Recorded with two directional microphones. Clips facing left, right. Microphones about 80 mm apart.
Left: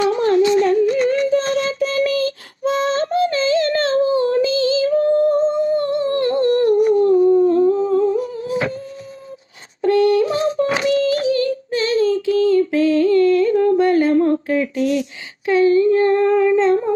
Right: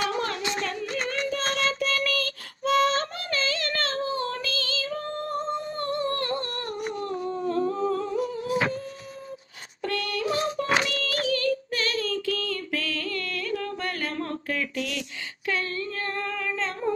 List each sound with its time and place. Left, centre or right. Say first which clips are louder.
0.1 s a sound: left 14 dB; left
0.5 s yodeling: left 16 dB; left
1.5 s music: left 8 dB; left
9.8 s music: left 14 dB; left
15.4 s humming: left 17 dB; left